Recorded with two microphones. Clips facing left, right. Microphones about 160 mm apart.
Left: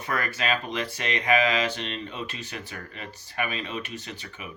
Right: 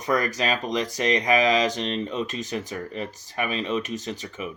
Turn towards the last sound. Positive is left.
turn(degrees=-40)  # may be behind; listen again after turning